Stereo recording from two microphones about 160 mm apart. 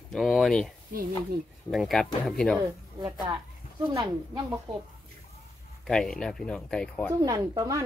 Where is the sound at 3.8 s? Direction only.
25° right (ahead or behind).